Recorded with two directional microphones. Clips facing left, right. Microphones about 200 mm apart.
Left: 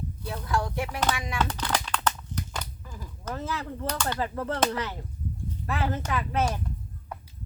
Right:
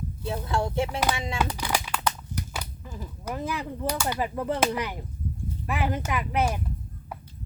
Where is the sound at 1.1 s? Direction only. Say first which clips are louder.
Right 2 dB; 25° right (ahead or behind).